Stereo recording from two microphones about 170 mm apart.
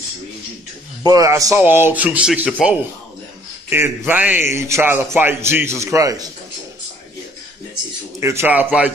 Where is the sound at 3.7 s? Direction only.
15° right (ahead or behind).